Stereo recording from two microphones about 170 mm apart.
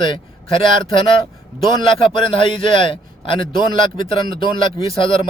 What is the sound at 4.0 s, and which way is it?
Speech, 60° right (ahead or behind).